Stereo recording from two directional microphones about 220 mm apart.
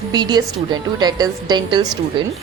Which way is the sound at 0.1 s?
20° right (ahead or behind).